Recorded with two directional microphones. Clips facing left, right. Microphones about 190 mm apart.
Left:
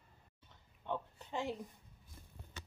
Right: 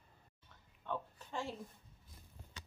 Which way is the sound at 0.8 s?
20° left (ahead or behind).